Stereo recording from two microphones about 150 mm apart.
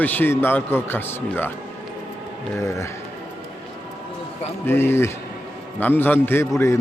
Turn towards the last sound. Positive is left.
turn(degrees=20)  # may be behind; listen again after turning